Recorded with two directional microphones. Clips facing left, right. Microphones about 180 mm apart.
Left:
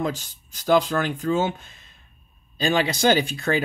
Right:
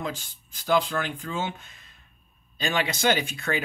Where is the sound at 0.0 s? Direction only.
40° left (ahead or behind).